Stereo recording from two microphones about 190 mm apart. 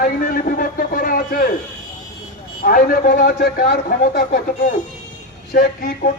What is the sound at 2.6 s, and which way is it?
Speech, 50° left (ahead or behind).